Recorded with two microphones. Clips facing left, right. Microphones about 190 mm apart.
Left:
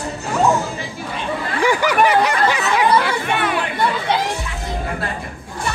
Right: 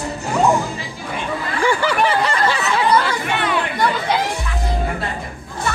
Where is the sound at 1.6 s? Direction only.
15° left (ahead or behind).